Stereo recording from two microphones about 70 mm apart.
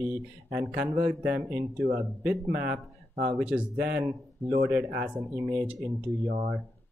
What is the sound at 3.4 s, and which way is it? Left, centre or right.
Speech, centre.